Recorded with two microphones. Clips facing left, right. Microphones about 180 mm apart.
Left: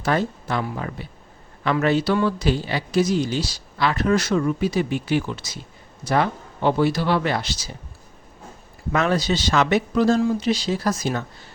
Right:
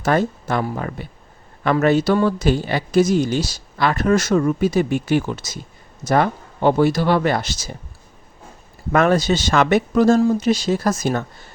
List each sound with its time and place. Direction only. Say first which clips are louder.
0.0 s speech: right 4 dB; 45° right (ahead or behind)
8.9 s speech: right 5 dB; 50° right (ahead or behind)